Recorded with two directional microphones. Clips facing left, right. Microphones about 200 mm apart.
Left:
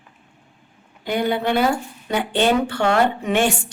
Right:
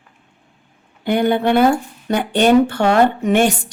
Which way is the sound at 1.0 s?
55° right (ahead or behind).